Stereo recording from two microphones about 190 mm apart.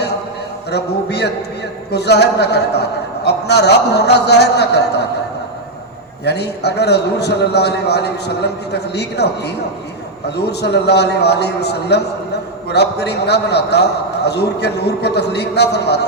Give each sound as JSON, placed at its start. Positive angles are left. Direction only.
{"t": 0.7, "sound": "a man's voice", "side_deg": 60}
{"t": 6.2, "sound": "a man's voice", "side_deg": 60}